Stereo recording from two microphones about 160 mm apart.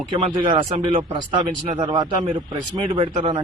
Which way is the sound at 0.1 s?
30° right (ahead or behind).